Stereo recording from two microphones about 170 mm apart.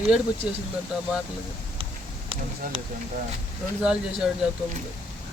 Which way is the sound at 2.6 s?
55° right (ahead or behind).